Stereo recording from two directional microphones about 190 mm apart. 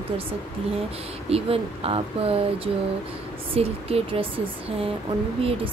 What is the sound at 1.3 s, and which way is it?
Speech, 30° right (ahead or behind).